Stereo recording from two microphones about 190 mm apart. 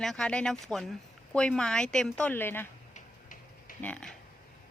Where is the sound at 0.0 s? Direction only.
Centre (ahead or behind).